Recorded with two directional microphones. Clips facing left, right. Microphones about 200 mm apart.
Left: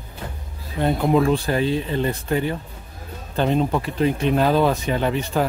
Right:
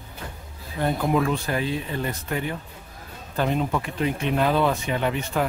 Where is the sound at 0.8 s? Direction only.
25° left (ahead or behind).